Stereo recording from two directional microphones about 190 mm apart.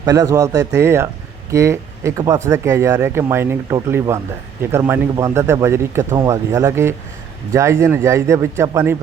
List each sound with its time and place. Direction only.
0.0 s speech: 20° right (ahead or behind)